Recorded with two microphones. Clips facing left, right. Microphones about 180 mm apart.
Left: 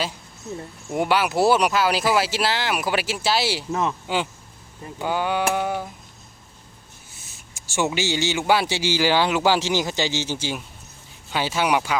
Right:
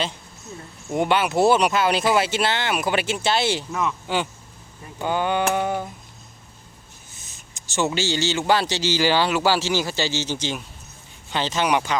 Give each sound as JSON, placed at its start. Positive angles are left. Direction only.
{"t": 0.9, "sound": "speech", "side_deg": 5}
{"t": 3.7, "sound": "speech", "side_deg": 35}
{"t": 4.9, "sound": "speech", "side_deg": 5}
{"t": 7.5, "sound": "speech", "side_deg": 15}